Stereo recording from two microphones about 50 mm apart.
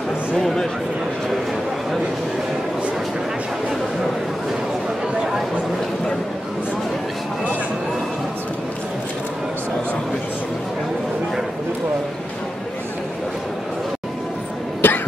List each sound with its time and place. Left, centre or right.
0.4 s speech: centre
14.8 s cough: left